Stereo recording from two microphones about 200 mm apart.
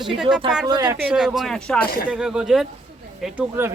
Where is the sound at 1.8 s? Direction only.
45° left (ahead or behind).